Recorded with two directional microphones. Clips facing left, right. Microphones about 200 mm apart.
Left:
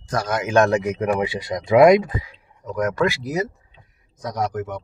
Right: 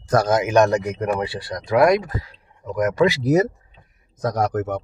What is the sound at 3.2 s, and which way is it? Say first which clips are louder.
A man's voice: right 7 dB; 50° right (ahead or behind).